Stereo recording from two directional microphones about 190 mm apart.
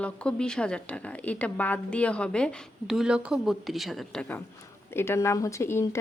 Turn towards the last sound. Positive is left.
turn(degrees=15)  # may be behind; listen again after turning